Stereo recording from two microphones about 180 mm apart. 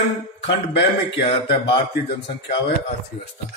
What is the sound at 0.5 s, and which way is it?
Speech, 75° left (ahead or behind).